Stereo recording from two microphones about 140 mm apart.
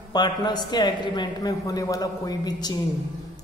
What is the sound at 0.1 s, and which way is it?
A man's voice, 30° left (ahead or behind).